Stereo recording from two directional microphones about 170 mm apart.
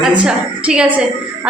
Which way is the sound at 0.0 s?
5° right (ahead or behind).